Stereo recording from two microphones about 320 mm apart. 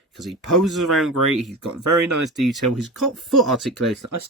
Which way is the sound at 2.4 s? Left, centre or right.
Centre.